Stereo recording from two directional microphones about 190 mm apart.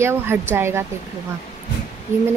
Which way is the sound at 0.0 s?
10° right (ahead or behind).